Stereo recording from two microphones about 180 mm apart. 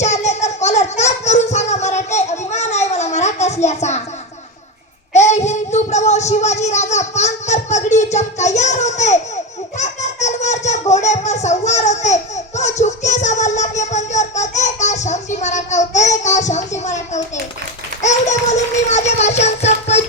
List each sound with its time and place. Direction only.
0.0 s music: 40° left (ahead or behind)
5.1 s child singing: 40° left (ahead or behind)
18.0 s a sound: 40° left (ahead or behind)